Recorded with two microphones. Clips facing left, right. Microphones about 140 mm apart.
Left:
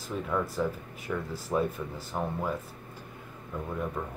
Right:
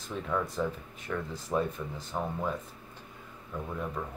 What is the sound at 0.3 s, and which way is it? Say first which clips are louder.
Speech: left 1 dB; 5° left (ahead or behind).